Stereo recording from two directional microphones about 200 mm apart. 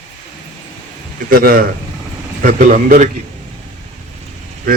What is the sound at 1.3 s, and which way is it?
A man's voice, 45° right (ahead or behind).